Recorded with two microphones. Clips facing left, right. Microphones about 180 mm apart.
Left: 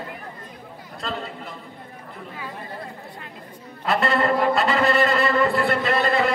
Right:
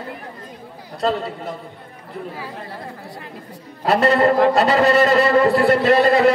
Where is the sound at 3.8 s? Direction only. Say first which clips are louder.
Right 6 dB; 40° right (ahead or behind).